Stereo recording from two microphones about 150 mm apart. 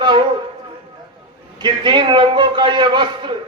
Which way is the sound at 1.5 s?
30° right (ahead or behind).